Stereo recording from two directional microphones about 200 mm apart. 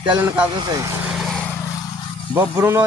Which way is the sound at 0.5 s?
20° right (ahead or behind).